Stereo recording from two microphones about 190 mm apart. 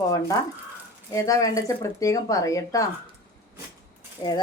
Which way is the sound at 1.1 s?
15° left (ahead or behind).